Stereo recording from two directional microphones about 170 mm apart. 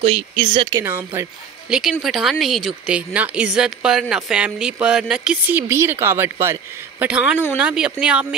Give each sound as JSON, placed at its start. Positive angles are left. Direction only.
{"t": 0.0, "sound": "speech", "side_deg": -30}
{"t": 0.8, "sound": "speech", "side_deg": -10}
{"t": 1.7, "sound": "speech", "side_deg": 0}